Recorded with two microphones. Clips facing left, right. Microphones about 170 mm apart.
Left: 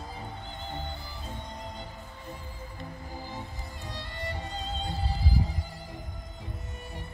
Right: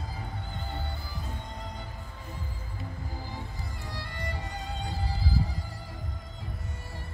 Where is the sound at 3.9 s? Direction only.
20° left (ahead or behind).